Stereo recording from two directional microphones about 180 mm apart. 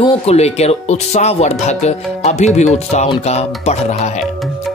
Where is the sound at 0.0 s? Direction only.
35° left (ahead or behind).